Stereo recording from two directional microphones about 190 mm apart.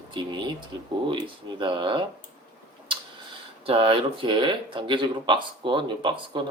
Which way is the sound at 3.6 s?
30° right (ahead or behind).